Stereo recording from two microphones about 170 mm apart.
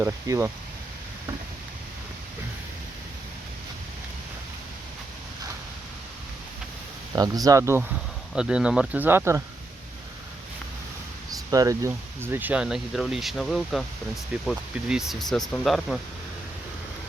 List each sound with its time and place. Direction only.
0.0 s speech: 15° right (ahead or behind)
7.2 s speech: 20° right (ahead or behind)
11.5 s speech: 20° right (ahead or behind); by 16.0 s centre (ahead or behind)